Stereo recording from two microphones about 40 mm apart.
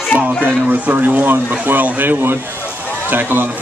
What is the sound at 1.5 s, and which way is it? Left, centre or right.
Speech, right.